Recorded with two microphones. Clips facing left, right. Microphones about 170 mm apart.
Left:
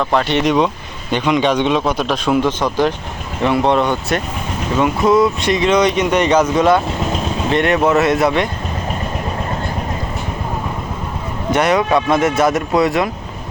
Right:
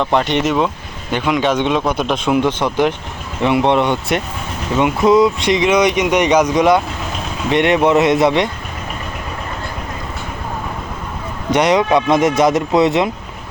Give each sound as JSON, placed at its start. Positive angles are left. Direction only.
{"t": 0.0, "sound": "speech", "side_deg": -20}
{"t": 0.4, "sound": "speech", "side_deg": -5}
{"t": 11.5, "sound": "speech", "side_deg": -20}